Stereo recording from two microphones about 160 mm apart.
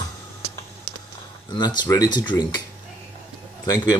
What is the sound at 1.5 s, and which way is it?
Speech, 30° left (ahead or behind).